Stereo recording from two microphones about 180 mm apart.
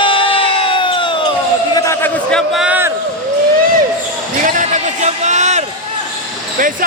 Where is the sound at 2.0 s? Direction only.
5° left (ahead or behind).